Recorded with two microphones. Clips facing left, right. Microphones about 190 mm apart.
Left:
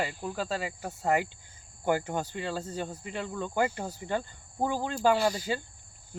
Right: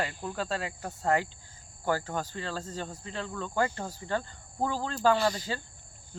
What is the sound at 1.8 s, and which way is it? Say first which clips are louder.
Speech: left 2 dB; 20° left (ahead or behind).